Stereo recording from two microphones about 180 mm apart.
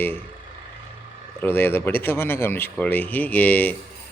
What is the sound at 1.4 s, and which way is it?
Speech, 10° left (ahead or behind).